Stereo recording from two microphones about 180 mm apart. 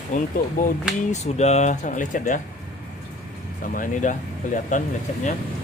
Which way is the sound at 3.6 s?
50° left (ahead or behind).